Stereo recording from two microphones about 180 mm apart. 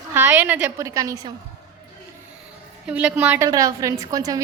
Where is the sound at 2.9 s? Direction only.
5° right (ahead or behind).